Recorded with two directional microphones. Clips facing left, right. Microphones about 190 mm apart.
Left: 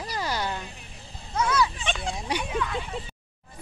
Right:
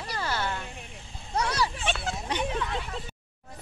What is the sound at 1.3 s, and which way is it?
Speech, 35° right (ahead or behind).